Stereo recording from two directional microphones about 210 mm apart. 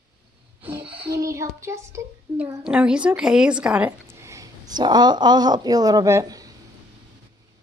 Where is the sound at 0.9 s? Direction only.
15° right (ahead or behind).